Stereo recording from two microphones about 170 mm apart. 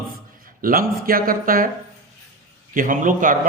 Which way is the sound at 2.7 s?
50° right (ahead or behind).